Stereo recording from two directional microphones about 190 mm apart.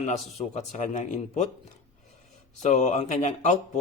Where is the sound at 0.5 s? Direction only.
40° left (ahead or behind).